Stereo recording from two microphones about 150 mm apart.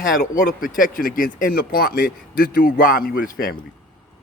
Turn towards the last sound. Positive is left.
turn(degrees=75)  # may be behind; listen again after turning